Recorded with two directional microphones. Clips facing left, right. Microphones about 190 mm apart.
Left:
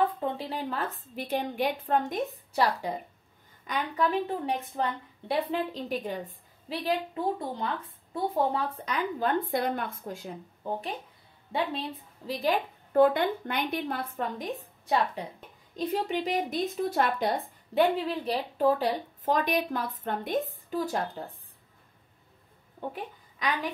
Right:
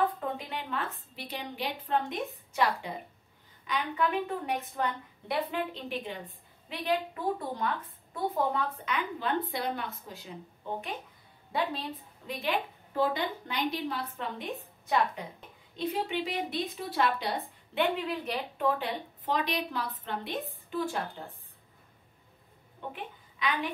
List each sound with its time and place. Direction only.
0.2 s a woman's voice: 30° left (ahead or behind)
7.5 s a woman's voice: 25° left (ahead or behind); by 10.7 s 50° left (ahead or behind)
11.5 s a woman's voice: 25° left (ahead or behind)
12.3 s a woman's voice: 35° left (ahead or behind)
12.9 s a woman's voice: 55° left (ahead or behind)
15.2 s a woman's voice: 35° left (ahead or behind)
22.8 s a child's voice: 40° left (ahead or behind)